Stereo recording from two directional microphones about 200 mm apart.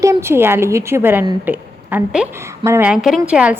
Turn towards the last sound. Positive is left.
turn(degrees=-5)  # may be behind; listen again after turning